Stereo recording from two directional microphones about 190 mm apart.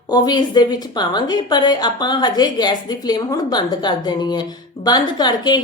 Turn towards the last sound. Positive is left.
turn(degrees=20)  # may be behind; listen again after turning